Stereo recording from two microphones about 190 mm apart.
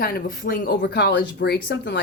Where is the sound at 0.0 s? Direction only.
50° left (ahead or behind).